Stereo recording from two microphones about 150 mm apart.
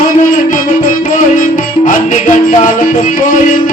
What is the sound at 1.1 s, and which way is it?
Music, 60° left (ahead or behind).